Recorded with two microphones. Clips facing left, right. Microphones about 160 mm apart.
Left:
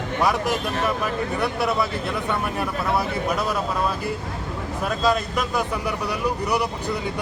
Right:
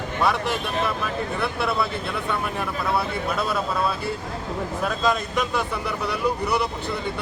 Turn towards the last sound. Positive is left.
turn(degrees=10)  # may be behind; listen again after turning